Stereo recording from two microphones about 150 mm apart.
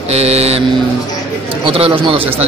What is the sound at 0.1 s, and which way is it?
Mantra, 45° right (ahead or behind).